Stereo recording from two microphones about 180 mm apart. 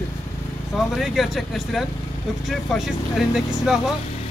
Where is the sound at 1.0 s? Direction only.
Centre (ahead or behind).